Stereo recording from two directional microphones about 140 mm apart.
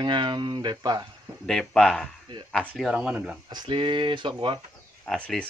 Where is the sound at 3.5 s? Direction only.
35° right (ahead or behind).